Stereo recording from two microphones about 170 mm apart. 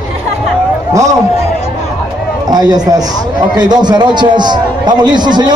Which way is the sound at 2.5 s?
25° right (ahead or behind).